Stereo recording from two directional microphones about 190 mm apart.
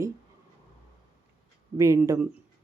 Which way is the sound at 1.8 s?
15° right (ahead or behind).